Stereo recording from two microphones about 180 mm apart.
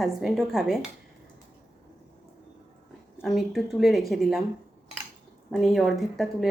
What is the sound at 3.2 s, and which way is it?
A woman's voice, centre (ahead or behind).